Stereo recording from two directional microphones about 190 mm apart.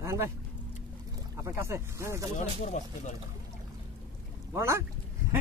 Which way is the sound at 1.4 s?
15° right (ahead or behind).